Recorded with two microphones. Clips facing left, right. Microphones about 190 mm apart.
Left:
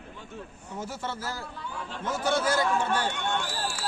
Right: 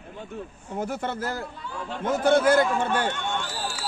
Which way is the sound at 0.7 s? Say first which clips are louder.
Right 6 dB; 55° right (ahead or behind).